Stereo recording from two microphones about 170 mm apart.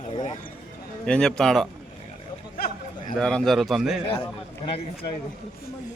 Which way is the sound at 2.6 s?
60° left (ahead or behind).